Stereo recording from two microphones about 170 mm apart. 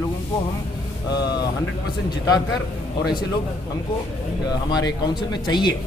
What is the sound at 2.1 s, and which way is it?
Speech, 25° left (ahead or behind).